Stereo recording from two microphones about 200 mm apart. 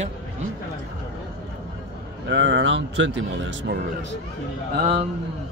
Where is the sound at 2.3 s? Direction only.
65° right (ahead or behind).